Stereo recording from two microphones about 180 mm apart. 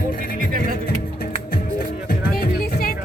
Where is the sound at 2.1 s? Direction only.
55° left (ahead or behind).